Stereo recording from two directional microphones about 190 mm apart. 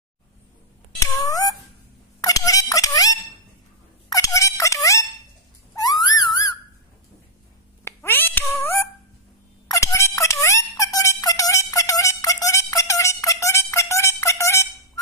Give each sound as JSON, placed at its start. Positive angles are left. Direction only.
{"t": 1.2, "sound": "cat", "side_deg": 20}
{"t": 2.2, "sound": "a sound", "side_deg": 20}
{"t": 4.1, "sound": "music", "side_deg": 15}
{"t": 5.8, "sound": "a sound", "side_deg": 20}
{"t": 7.8, "sound": "meow", "side_deg": 10}
{"t": 9.7, "sound": "music", "side_deg": 15}